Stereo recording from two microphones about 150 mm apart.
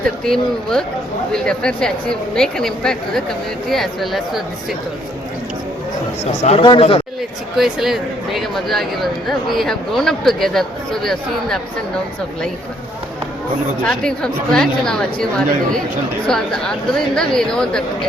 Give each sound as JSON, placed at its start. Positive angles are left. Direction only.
{"t": 0.3, "sound": "speech", "side_deg": 5}
{"t": 6.6, "sound": "speech", "side_deg": 35}
{"t": 7.5, "sound": "speech", "side_deg": 0}
{"t": 13.8, "sound": "speech", "side_deg": 5}